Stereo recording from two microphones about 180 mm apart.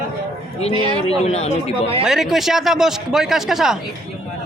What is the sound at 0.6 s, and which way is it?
Speech, 30° left (ahead or behind).